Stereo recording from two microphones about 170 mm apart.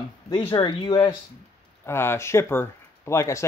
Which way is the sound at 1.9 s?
15° left (ahead or behind).